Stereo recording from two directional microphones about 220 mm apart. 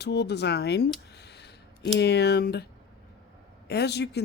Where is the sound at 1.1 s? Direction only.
50° left (ahead or behind).